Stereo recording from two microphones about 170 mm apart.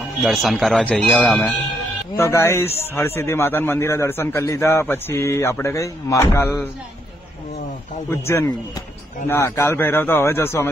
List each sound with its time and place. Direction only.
0.2 s speech: centre (ahead or behind)
2.1 s a man's voice: 15° left (ahead or behind)
8.1 s a man's voice: 15° left (ahead or behind)